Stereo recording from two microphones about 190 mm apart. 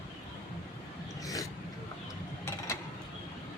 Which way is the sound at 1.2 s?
20° left (ahead or behind).